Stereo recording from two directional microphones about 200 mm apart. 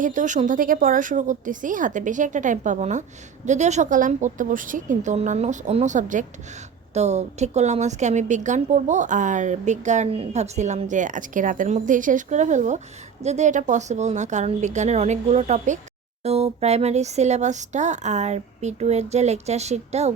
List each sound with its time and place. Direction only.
0.0 s a woman's voice: 40° right (ahead or behind)